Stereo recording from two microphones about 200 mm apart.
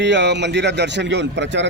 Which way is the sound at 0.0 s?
60° right (ahead or behind).